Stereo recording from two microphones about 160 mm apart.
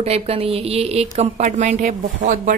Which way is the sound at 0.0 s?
40° right (ahead or behind).